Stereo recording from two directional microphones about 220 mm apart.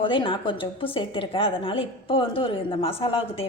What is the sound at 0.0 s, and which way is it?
A woman's voice, 25° left (ahead or behind).